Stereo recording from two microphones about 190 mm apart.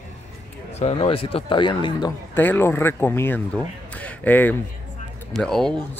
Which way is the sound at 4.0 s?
10° left (ahead or behind).